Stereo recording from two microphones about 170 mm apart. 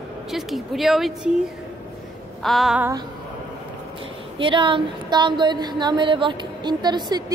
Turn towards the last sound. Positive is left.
turn(degrees=-25)  # may be behind; listen again after turning